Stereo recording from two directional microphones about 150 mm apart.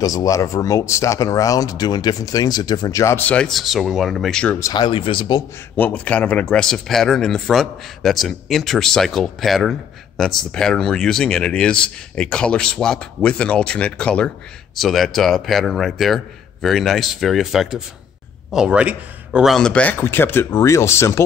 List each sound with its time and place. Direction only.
0.0 s speech: 25° left (ahead or behind); by 4.6 s 5° left (ahead or behind)
4.6 s speech: 25° left (ahead or behind)
5.8 s a man's voice: 10° left (ahead or behind)